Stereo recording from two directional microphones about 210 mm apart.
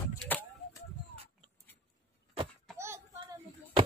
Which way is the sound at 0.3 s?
10° left (ahead or behind).